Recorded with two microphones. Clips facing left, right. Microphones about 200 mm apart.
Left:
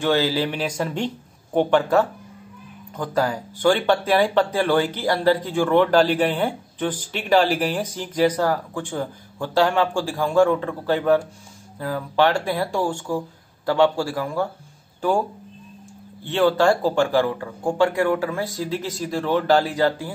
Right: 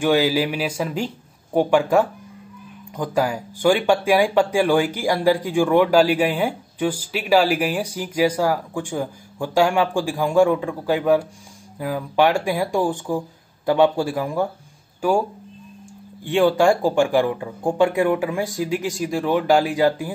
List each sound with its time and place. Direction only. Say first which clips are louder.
0.0 s speech: right 2 dB; 15° right (ahead or behind)
16.3 s speech: right 2 dB; 15° right (ahead or behind)